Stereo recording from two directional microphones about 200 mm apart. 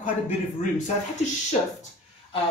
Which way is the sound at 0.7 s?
35° left (ahead or behind).